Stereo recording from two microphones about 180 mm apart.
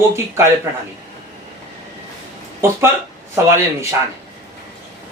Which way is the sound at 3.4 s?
15° right (ahead or behind).